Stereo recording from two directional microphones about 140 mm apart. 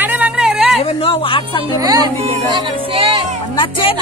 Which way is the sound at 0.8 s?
40° left (ahead or behind).